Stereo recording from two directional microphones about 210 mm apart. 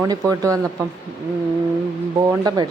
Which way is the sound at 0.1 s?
15° right (ahead or behind).